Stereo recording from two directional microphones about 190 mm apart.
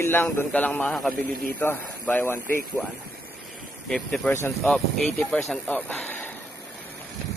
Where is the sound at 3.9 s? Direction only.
5° left (ahead or behind).